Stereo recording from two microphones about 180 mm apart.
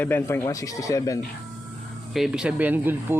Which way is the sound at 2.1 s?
5° right (ahead or behind).